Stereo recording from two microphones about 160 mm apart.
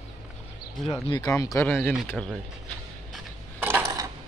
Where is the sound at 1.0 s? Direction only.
25° left (ahead or behind).